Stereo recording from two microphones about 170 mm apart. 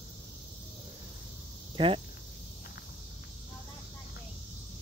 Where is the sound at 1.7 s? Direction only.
30° right (ahead or behind).